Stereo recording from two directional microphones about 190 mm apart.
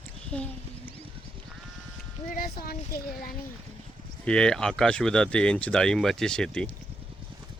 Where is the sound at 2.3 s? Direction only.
50° left (ahead or behind).